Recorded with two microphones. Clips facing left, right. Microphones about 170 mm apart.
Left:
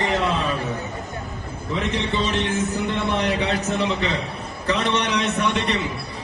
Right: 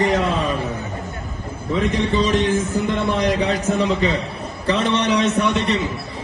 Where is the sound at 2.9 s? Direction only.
40° right (ahead or behind).